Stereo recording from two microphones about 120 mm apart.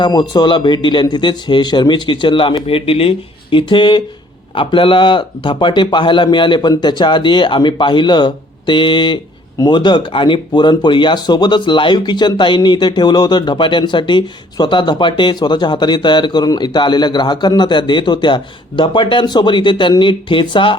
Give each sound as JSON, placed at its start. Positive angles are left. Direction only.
{"t": 0.0, "sound": "speech", "side_deg": 35}